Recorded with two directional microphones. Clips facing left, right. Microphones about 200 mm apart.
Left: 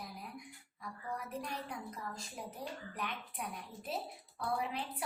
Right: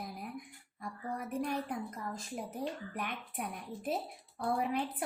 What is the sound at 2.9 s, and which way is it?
A woman's voice, 50° right (ahead or behind).